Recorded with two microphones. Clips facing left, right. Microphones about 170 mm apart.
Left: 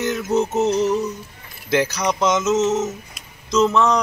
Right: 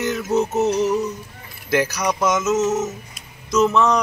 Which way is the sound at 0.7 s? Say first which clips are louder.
Left 1 dB; 15° right (ahead or behind).